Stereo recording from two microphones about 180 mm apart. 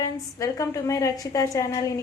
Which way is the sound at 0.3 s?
20° left (ahead or behind).